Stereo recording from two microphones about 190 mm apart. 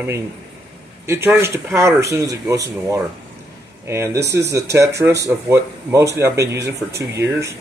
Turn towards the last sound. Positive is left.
turn(degrees=-15)  # may be behind; listen again after turning